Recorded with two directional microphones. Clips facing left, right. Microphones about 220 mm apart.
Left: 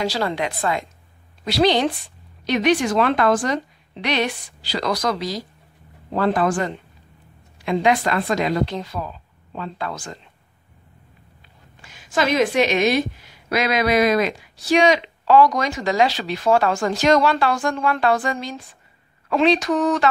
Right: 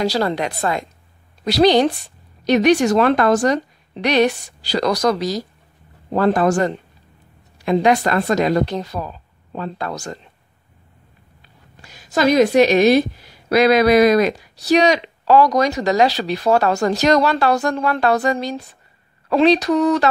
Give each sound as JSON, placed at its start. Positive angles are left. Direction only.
{"t": 0.0, "sound": "a woman's voice", "side_deg": -40}
{"t": 11.8, "sound": "a woman's voice", "side_deg": -40}